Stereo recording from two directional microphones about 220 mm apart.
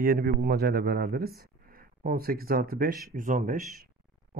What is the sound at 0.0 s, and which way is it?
Speech, 40° right (ahead or behind).